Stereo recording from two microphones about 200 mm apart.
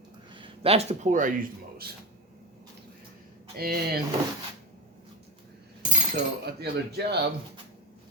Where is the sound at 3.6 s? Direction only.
50° right (ahead or behind).